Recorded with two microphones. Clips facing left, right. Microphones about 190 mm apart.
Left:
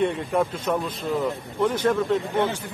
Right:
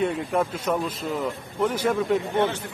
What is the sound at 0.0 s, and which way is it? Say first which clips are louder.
A man's voice: left 1 dB; centre (ahead or behind).